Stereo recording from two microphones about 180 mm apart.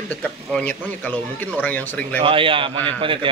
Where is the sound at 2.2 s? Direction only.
30° right (ahead or behind).